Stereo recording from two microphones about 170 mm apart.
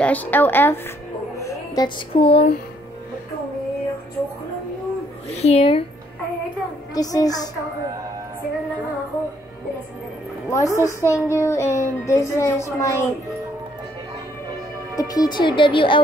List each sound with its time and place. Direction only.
0.0 s speech: 10° left (ahead or behind)
1.4 s music: 20° left (ahead or behind)
2.1 s speech: 35° left (ahead or behind)
5.3 s speech: 40° left (ahead or behind)
7.0 s speech: 20° left (ahead or behind)
10.5 s speech: 20° left (ahead or behind)
15.0 s speech: 25° left (ahead or behind)